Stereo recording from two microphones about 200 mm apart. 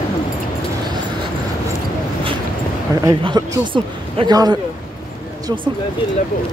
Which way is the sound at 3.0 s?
20° right (ahead or behind).